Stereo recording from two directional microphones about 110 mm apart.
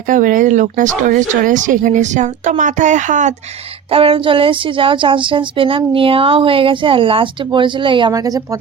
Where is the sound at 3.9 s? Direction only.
60° right (ahead or behind).